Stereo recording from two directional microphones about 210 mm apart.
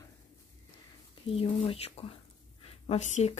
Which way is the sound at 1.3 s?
25° left (ahead or behind).